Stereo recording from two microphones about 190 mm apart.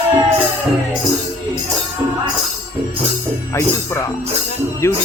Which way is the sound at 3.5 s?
15° left (ahead or behind).